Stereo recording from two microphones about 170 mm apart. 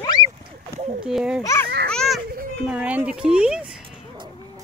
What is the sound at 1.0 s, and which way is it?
Speech, 5° right (ahead or behind).